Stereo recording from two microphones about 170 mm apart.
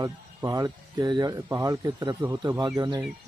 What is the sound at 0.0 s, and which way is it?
Speech, 20° right (ahead or behind).